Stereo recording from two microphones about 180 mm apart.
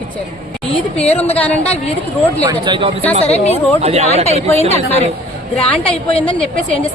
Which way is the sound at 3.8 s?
35° right (ahead or behind).